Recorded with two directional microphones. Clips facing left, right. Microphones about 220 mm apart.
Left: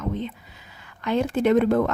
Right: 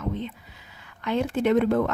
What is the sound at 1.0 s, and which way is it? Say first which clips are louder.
Speech: left 2 dB; 40° left (ahead or behind).